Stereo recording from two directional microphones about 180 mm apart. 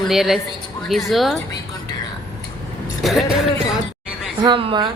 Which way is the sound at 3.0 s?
Centre (ahead or behind).